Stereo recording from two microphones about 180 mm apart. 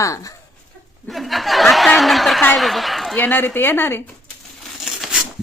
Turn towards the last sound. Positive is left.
turn(degrees=0)  # may be behind; listen again after turning